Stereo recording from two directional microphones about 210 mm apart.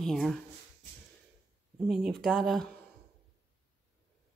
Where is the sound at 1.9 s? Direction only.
Centre (ahead or behind).